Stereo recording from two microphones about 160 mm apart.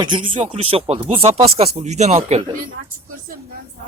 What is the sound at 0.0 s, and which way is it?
Speech, 30° right (ahead or behind).